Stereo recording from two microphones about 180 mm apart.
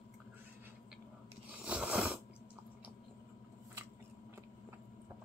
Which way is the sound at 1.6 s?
5° right (ahead or behind).